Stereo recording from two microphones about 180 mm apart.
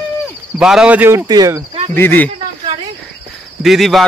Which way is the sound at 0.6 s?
5° right (ahead or behind).